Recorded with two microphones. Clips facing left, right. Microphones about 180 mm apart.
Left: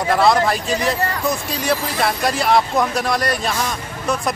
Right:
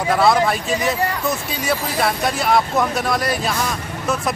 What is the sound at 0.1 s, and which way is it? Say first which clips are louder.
Speech: even; centre (ahead or behind).